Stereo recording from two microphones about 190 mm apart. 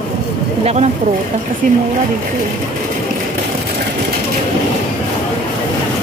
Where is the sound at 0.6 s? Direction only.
35° right (ahead or behind).